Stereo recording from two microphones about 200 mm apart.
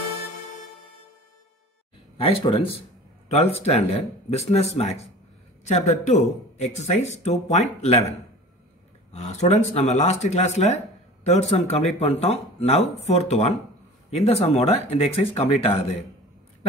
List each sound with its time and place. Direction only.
2.1 s a man's voice: 25° left (ahead or behind)
9.1 s a man's voice: 35° left (ahead or behind)